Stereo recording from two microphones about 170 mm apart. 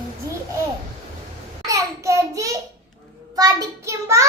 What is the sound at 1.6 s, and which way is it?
Child singing, 20° right (ahead or behind).